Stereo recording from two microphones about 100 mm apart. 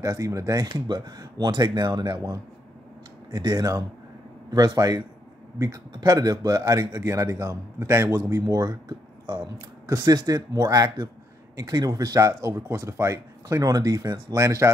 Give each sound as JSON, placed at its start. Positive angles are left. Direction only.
{"t": 0.0, "sound": "a man's voice", "side_deg": -35}